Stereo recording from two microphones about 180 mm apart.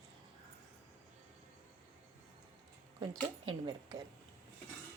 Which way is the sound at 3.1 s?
25° right (ahead or behind).